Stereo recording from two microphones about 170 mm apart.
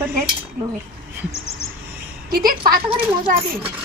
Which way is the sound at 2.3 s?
60° right (ahead or behind).